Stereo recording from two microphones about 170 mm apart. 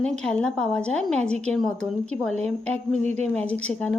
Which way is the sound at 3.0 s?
40° right (ahead or behind).